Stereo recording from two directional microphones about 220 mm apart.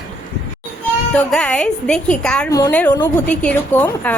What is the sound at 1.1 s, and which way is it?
A woman's voice, 5° left (ahead or behind).